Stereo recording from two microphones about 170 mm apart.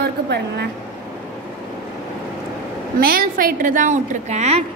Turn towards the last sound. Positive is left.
turn(degrees=-40)  # may be behind; listen again after turning